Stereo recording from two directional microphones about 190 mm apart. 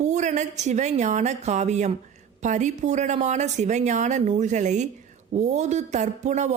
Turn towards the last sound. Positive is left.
turn(degrees=-35)  # may be behind; listen again after turning